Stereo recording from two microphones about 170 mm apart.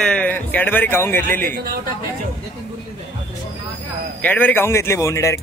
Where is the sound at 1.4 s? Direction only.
55° right (ahead or behind).